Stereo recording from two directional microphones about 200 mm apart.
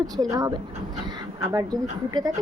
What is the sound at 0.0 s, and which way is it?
Speech, 20° right (ahead or behind).